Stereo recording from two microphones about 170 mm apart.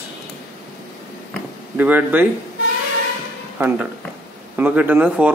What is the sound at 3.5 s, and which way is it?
Speech, 10° right (ahead or behind).